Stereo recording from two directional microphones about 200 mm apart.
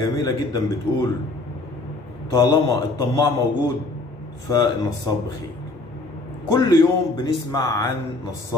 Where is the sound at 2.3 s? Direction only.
20° left (ahead or behind).